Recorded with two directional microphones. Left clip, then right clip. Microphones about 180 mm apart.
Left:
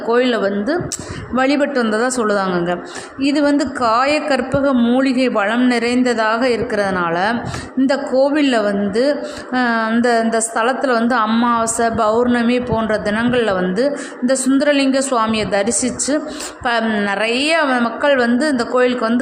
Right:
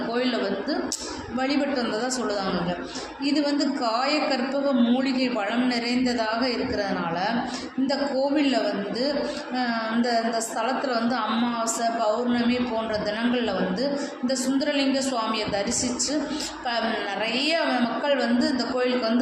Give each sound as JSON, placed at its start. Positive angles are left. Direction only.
{"t": 0.1, "sound": "a woman's voice", "side_deg": 55}